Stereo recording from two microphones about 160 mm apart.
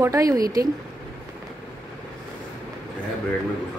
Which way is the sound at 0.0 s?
20° right (ahead or behind).